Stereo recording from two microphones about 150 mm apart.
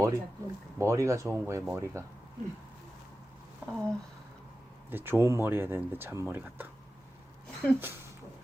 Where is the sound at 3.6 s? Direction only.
15° right (ahead or behind).